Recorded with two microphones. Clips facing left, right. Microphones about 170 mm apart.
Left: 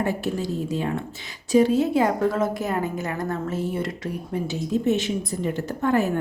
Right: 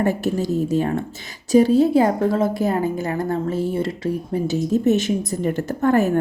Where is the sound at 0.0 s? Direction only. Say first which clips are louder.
Right 5 dB; 45° right (ahead or behind); by 4.4 s 30° right (ahead or behind).